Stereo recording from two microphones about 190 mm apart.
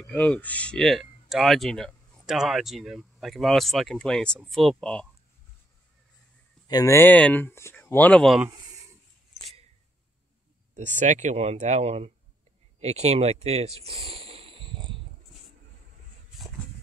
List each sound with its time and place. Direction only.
0.0 s speech: 5° left (ahead or behind)
6.7 s speech: 15° left (ahead or behind); by 8.5 s centre (ahead or behind)
11.0 s speech: 40° right (ahead or behind)